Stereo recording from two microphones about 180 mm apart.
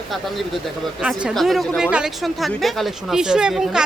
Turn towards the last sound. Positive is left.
turn(degrees=-5)  # may be behind; listen again after turning